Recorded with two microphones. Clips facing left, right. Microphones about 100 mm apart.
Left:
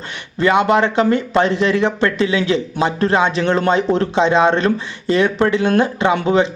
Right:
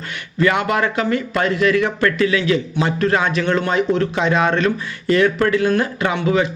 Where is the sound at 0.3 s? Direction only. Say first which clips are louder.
Left 4 dB; 25° left (ahead or behind).